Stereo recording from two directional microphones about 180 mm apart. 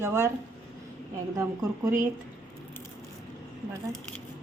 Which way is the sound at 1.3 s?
20° right (ahead or behind).